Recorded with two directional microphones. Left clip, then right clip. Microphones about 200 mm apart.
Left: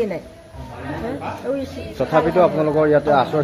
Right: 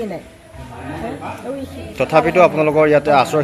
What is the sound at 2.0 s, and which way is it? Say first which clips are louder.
A man's voice: right 3 dB; 10° right (ahead or behind).